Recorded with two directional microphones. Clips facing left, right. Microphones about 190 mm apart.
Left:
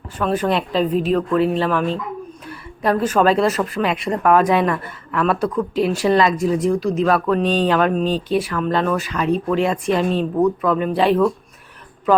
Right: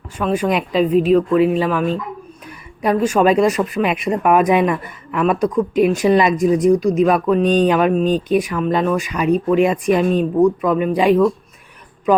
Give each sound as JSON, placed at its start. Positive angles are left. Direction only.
{"t": 0.2, "sound": "speech", "side_deg": -10}